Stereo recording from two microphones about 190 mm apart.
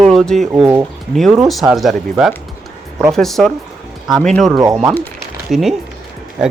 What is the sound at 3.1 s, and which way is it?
Speech, centre (ahead or behind).